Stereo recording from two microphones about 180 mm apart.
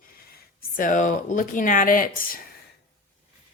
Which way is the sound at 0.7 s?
45° left (ahead or behind).